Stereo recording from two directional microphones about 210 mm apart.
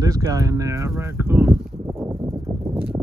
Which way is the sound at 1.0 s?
10° right (ahead or behind).